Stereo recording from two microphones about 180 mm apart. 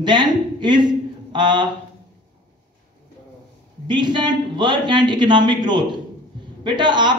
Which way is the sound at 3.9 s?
25° right (ahead or behind).